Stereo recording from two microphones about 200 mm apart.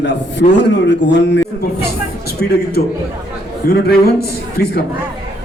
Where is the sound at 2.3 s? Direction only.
55° left (ahead or behind).